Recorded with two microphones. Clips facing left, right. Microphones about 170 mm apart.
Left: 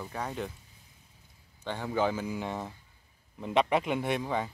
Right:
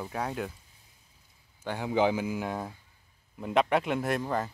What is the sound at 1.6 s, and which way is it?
Speech, 10° right (ahead or behind).